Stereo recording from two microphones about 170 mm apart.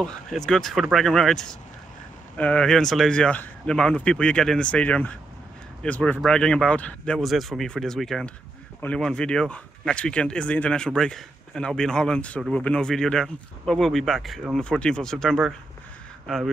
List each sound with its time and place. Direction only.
0.0 s speech: centre (ahead or behind)